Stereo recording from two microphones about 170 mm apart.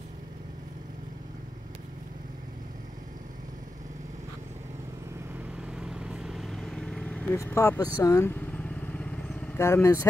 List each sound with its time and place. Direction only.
5.6 s vehicle: 5° right (ahead or behind)
7.3 s speech: 15° left (ahead or behind)
8.0 s vehicle: 15° left (ahead or behind)